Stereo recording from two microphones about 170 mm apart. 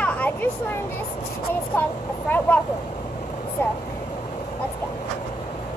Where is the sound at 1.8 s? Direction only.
10° left (ahead or behind).